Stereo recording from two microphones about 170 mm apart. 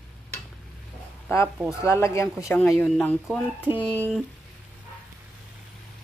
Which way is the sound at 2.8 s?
Centre (ahead or behind).